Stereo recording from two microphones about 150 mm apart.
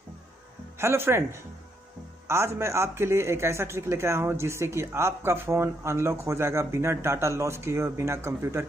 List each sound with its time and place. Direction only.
0.7 s a man's voice: 15° right (ahead or behind)